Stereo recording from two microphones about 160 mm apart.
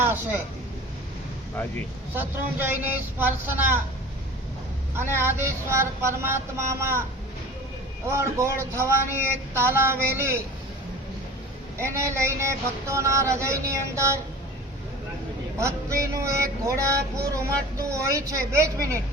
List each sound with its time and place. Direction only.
0.0 s speech: 15° right (ahead or behind)
2.1 s speech: 10° right (ahead or behind)
4.9 s speech: 15° right (ahead or behind)
8.1 s speech: 20° right (ahead or behind)
11.9 s speech: 15° right (ahead or behind)
15.5 s speech: 20° right (ahead or behind)